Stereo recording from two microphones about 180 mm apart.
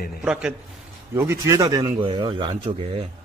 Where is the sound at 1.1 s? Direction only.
15° right (ahead or behind); by 3.0 s 30° right (ahead or behind).